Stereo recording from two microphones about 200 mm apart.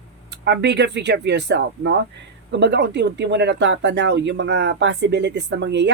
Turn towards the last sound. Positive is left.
turn(degrees=-60)  # may be behind; listen again after turning